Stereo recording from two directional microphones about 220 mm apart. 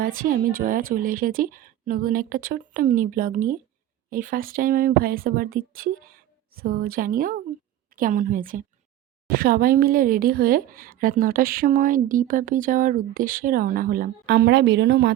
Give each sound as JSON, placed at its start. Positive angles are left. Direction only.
{"t": 0.0, "sound": "a woman's voice", "side_deg": -40}